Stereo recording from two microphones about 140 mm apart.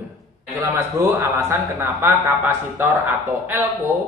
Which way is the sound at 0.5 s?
20° right (ahead or behind).